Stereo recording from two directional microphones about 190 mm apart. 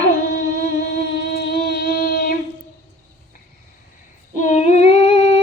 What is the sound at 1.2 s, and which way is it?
Music, 60° left (ahead or behind).